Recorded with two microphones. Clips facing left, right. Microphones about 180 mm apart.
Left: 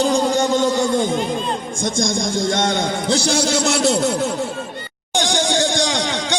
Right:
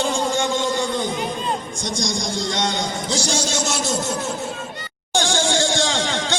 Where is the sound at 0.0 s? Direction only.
40° left (ahead or behind).